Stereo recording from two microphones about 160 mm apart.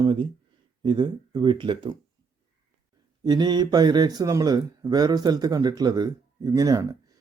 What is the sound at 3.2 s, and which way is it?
Speech, 25° right (ahead or behind).